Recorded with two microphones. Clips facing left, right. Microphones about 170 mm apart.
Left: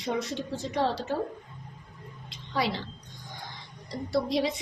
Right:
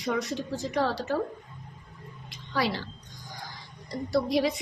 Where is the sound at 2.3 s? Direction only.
25° left (ahead or behind).